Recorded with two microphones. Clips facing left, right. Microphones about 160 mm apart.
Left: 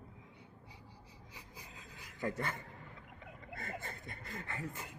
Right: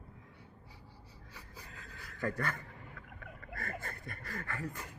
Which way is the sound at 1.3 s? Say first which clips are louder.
Right 2 dB; 15° left (ahead or behind).